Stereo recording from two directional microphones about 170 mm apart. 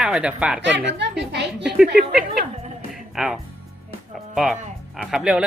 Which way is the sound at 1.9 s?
65° right (ahead or behind).